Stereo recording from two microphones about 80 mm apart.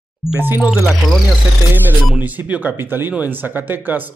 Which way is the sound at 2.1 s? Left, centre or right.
Centre.